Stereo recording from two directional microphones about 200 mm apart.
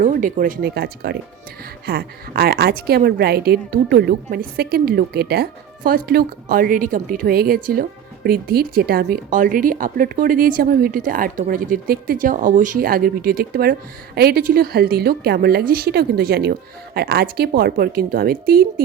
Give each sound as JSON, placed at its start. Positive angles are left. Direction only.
{"t": 0.0, "sound": "a woman's voice", "side_deg": -40}